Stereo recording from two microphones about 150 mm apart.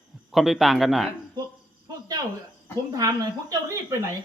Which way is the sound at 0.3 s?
Centre (ahead or behind).